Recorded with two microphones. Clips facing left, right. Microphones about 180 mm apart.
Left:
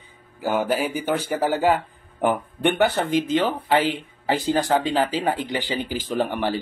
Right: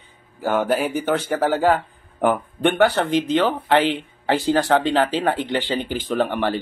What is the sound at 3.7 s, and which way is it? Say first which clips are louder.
Speech: right 2 dB; 5° left (ahead or behind).